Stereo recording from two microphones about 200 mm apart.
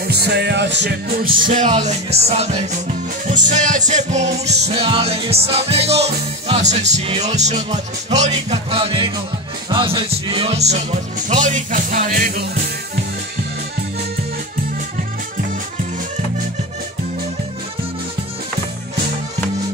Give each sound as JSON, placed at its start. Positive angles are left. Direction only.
{"t": 0.1, "sound": "music", "side_deg": -55}